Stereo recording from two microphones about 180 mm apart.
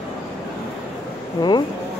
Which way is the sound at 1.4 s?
25° left (ahead or behind).